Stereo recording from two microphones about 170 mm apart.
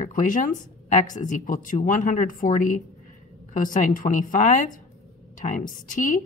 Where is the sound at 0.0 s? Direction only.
50° left (ahead or behind).